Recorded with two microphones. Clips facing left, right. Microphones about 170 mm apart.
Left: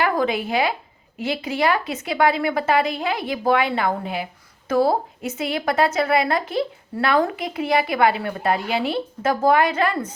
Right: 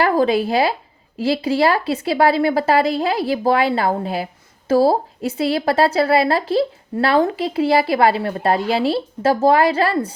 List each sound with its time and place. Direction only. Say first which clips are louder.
0.0 s a woman's voice: right 5 dB; 30° right (ahead or behind)